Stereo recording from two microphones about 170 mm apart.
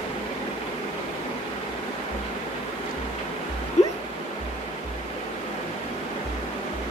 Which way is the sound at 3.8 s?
40° left (ahead or behind).